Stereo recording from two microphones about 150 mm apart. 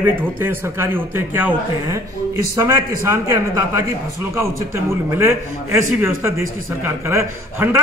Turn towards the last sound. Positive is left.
turn(degrees=-15)  # may be behind; listen again after turning